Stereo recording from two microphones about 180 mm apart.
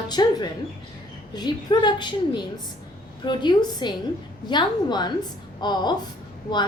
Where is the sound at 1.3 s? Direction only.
25° left (ahead or behind).